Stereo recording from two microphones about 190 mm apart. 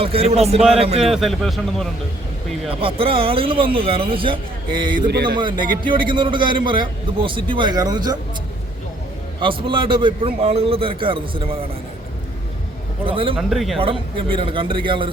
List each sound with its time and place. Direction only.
0.0 s a man's voice: 30° right (ahead or behind)
1.1 s a man's voice: centre (ahead or behind)
2.6 s a man's voice: 30° right (ahead or behind)
4.9 s speech: 55° right (ahead or behind)
5.8 s a man's voice: 25° right (ahead or behind)
9.4 s a man's voice: 25° right (ahead or behind)
13.1 s a man's voice: 30° right (ahead or behind)
13.3 s a man's voice: centre (ahead or behind)
13.7 s a man's voice: 30° right (ahead or behind)